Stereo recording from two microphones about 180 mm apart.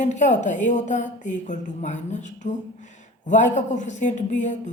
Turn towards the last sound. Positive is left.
turn(degrees=40)  # may be behind; listen again after turning